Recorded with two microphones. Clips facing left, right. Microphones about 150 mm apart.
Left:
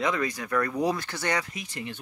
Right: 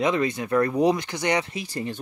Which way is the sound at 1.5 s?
35° right (ahead or behind).